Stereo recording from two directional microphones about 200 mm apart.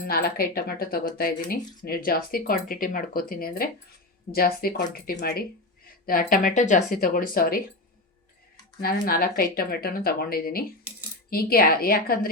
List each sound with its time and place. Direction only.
0.0 s speech: 50° left (ahead or behind)
8.8 s speech: 50° left (ahead or behind)